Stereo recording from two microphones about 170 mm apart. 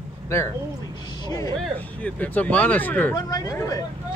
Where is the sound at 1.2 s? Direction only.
20° left (ahead or behind).